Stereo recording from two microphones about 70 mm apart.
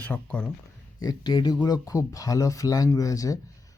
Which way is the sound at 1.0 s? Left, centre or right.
Left.